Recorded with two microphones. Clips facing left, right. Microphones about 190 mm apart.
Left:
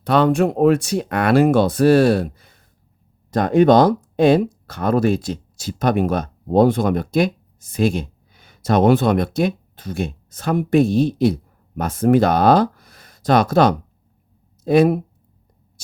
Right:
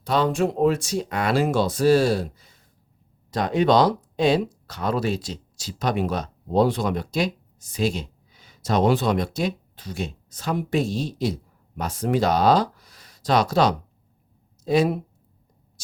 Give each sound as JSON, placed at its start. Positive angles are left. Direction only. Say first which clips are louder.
{"t": 0.0, "sound": "speech", "louder": "left 6 dB", "side_deg": 60}